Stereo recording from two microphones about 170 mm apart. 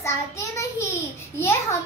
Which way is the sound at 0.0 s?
15° left (ahead or behind).